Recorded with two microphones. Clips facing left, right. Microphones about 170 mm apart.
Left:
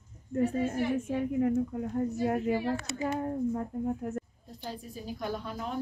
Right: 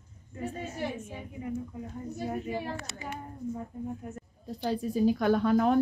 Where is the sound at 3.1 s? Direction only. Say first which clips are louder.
Left 5 dB; 70° left (ahead or behind).